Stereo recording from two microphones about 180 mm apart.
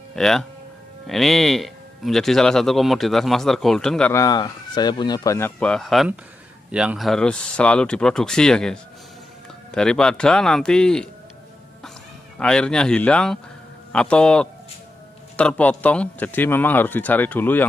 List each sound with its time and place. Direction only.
0.1 s speech: 5° left (ahead or behind)
4.1 s a man's voice: 20° left (ahead or behind); by 11.1 s 5° left (ahead or behind)
12.4 s a man's voice: 5° left (ahead or behind)